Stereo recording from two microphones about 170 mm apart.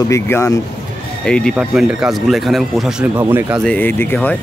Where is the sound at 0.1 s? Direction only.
20° left (ahead or behind).